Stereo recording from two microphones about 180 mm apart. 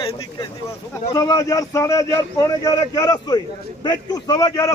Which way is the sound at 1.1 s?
20° left (ahead or behind).